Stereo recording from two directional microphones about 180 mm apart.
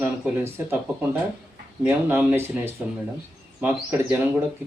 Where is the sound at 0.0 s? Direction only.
15° right (ahead or behind).